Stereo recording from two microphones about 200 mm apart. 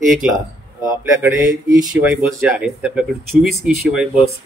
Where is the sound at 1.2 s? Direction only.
20° right (ahead or behind).